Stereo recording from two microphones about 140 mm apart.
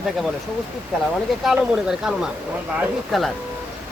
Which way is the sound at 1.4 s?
5° right (ahead or behind).